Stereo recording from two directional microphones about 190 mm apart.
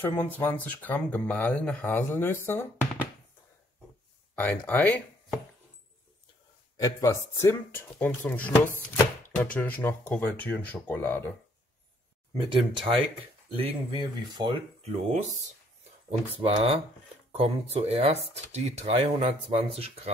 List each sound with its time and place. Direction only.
0.0 s speech: 10° left (ahead or behind)
4.4 s speech: 10° left (ahead or behind)
6.8 s speech: 15° left (ahead or behind)
12.4 s speech: 25° right (ahead or behind)